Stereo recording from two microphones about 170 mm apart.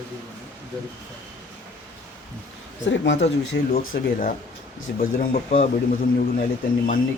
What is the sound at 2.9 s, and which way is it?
Speech, 90° left.